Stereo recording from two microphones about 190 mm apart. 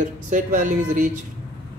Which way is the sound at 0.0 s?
40° right (ahead or behind).